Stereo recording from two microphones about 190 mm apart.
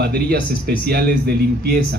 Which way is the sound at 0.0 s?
55° right (ahead or behind).